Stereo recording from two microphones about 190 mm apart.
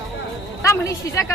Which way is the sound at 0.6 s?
15° left (ahead or behind).